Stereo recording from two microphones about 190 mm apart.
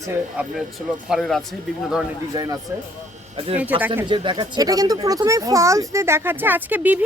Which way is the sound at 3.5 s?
10° right (ahead or behind).